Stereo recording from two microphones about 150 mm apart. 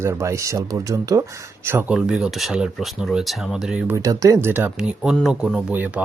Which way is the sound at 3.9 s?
20° right (ahead or behind).